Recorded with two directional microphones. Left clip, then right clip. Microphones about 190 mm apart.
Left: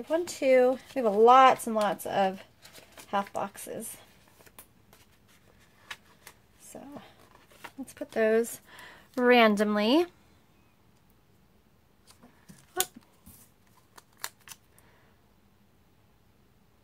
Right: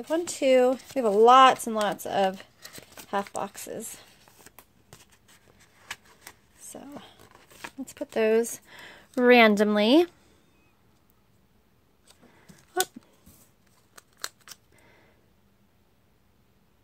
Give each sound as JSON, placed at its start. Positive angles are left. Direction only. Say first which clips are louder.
{"t": 0.0, "sound": "speech", "louder": "right 2 dB", "side_deg": -45}
{"t": 5.8, "sound": "a sound", "louder": "right 3 dB", "side_deg": -50}
{"t": 7.8, "sound": "speech", "louder": "right 2 dB", "side_deg": -35}
{"t": 13.9, "sound": "scissors", "louder": "right 3 dB", "side_deg": -10}